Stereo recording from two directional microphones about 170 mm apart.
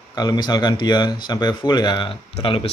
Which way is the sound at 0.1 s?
25° left (ahead or behind).